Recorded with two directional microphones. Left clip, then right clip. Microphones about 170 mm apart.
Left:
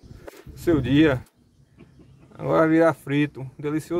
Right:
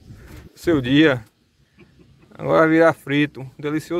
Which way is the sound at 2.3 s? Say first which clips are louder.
Right 4 dB; centre (ahead or behind).